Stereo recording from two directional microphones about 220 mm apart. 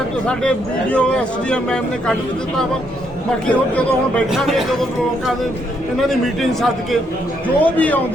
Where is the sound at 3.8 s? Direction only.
5° left (ahead or behind).